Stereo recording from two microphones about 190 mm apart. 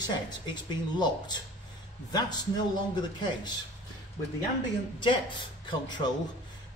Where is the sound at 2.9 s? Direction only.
25° left (ahead or behind).